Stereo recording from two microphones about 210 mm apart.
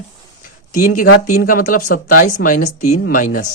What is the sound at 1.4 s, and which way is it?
A man's voice, 40° left (ahead or behind).